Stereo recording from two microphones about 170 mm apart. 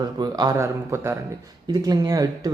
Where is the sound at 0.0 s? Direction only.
25° right (ahead or behind).